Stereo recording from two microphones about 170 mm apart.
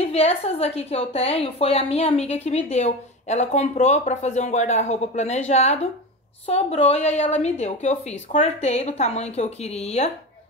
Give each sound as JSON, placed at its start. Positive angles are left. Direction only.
{"t": 0.0, "sound": "a woman's voice", "side_deg": 35}